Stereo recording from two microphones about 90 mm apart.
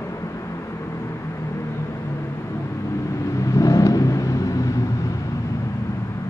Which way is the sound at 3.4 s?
35° left (ahead or behind).